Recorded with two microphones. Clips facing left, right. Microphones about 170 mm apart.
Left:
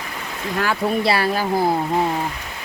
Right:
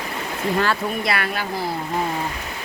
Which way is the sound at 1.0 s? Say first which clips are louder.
Left 5 dB; 30° left (ahead or behind).